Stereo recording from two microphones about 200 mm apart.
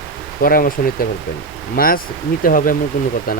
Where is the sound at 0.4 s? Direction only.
45° left (ahead or behind).